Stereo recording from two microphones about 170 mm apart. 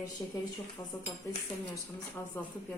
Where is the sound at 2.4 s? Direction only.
15° left (ahead or behind).